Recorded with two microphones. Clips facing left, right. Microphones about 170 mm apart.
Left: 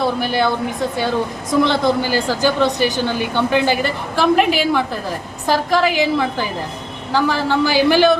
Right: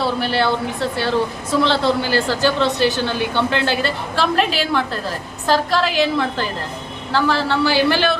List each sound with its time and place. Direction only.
0.0 s a woman's voice: 15° left (ahead or behind)